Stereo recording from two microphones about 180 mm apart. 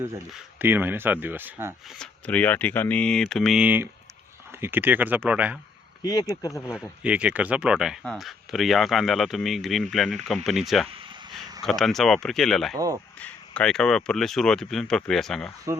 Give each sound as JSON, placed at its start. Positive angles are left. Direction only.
{"t": 0.3, "sound": "speech", "side_deg": -5}
{"t": 2.0, "sound": "speech", "side_deg": 10}
{"t": 6.0, "sound": "speech", "side_deg": 20}
{"t": 7.0, "sound": "speech", "side_deg": -5}
{"t": 10.8, "sound": "a sound", "side_deg": -30}
{"t": 11.6, "sound": "speech", "side_deg": 0}
{"t": 12.7, "sound": "speech", "side_deg": -20}
{"t": 13.1, "sound": "speech", "side_deg": 5}